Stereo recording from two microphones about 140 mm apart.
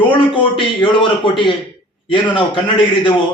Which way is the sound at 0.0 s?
35° left (ahead or behind).